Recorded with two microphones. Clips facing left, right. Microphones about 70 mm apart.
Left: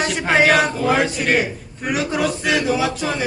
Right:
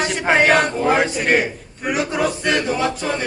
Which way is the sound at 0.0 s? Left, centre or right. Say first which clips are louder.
Even; centre.